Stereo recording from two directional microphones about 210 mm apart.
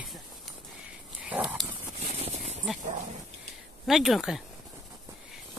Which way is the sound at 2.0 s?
30° right (ahead or behind).